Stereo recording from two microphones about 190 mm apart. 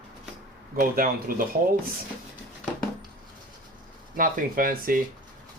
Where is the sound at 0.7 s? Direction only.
50° right (ahead or behind).